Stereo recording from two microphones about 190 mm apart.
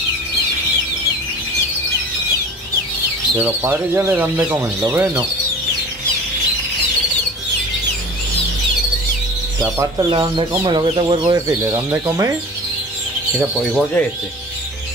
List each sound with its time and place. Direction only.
3.3 s speech: 10° right (ahead or behind)
9.8 s speech: 20° right (ahead or behind)
13.4 s speech: centre (ahead or behind)